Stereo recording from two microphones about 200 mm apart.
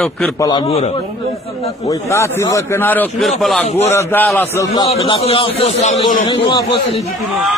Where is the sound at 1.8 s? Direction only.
15° left (ahead or behind).